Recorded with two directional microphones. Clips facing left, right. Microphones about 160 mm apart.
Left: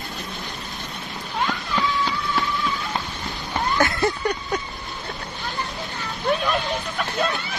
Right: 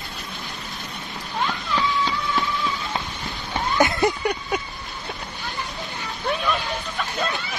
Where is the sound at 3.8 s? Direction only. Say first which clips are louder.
Right 3 dB; 20° right (ahead or behind).